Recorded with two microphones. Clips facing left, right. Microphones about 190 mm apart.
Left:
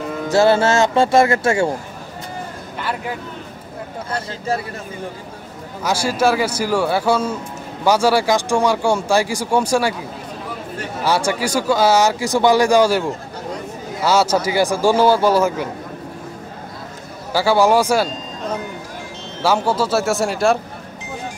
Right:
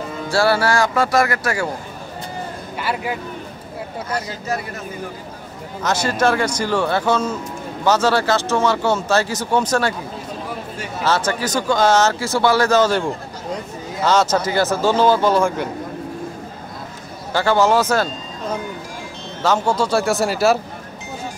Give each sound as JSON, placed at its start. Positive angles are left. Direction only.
{"t": 0.3, "sound": "speech", "side_deg": 20}
{"t": 4.1, "sound": "speech", "side_deg": 30}
{"t": 5.8, "sound": "speech", "side_deg": 10}
{"t": 11.1, "sound": "speech", "side_deg": 10}
{"t": 17.3, "sound": "speech", "side_deg": 10}
{"t": 19.4, "sound": "speech", "side_deg": 10}